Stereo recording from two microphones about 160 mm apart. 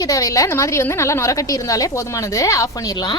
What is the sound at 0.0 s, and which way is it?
A woman's voice, 20° left (ahead or behind).